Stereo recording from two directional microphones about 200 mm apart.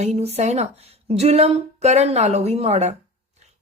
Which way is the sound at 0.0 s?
30° right (ahead or behind).